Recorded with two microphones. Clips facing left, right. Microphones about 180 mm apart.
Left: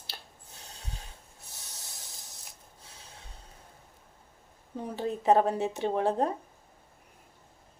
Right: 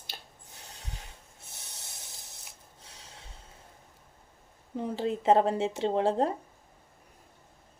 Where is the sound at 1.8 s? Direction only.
20° right (ahead or behind).